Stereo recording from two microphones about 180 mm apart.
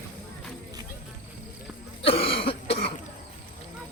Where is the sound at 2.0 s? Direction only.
30° left (ahead or behind).